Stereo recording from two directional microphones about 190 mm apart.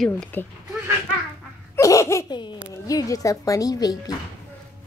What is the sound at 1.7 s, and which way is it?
Laughter, 15° left (ahead or behind).